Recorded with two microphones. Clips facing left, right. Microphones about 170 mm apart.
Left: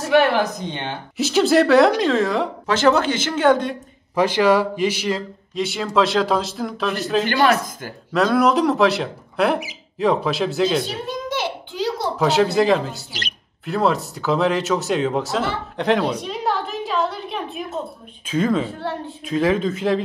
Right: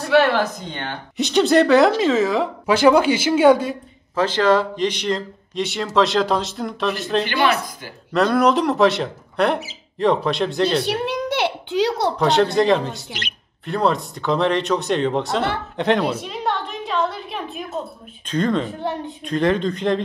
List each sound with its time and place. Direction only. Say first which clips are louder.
0.1 s speech: even; 15° left (ahead or behind)
1.1 s speech: even; centre (ahead or behind)
2.6 s speech: right 3 dB; 10° right (ahead or behind)
4.1 s speech: left 1 dB; 10° left (ahead or behind)
7.2 s speech: left 2 dB; 45° left (ahead or behind)
8.1 s speech: even; centre (ahead or behind)
10.9 s speech: right 4 dB; 70° right (ahead or behind)
12.2 s speech: left 1 dB; 5° left (ahead or behind)
16.0 s a sound: even; 5° right (ahead or behind)
18.2 s speech: left 1 dB; 5° left (ahead or behind)
18.8 s speech: right 2 dB; 20° right (ahead or behind)
19.2 s speech: even; 5° left (ahead or behind)